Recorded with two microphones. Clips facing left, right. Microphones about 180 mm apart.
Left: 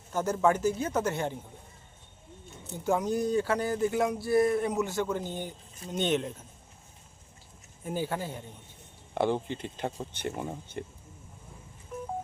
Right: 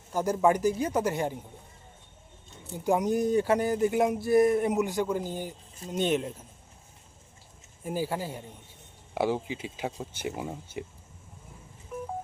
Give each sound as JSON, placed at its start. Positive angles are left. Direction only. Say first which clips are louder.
{"t": 0.1, "sound": "speech", "louder": "right 2 dB", "side_deg": -10}
{"t": 2.7, "sound": "speech", "louder": "right 2 dB", "side_deg": -15}
{"t": 7.9, "sound": "speech", "louder": "right 1 dB", "side_deg": -5}
{"t": 11.9, "sound": "vehicle", "louder": "right 2 dB", "side_deg": -5}